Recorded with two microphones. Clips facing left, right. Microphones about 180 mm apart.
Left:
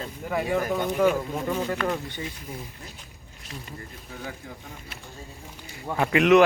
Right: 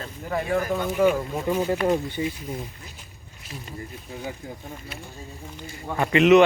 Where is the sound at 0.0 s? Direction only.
10° left (ahead or behind); by 2.2 s 15° right (ahead or behind).